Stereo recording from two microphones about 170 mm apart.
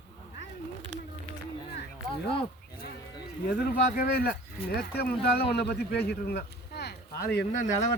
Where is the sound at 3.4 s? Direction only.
55° left (ahead or behind); by 7.3 s 70° left (ahead or behind).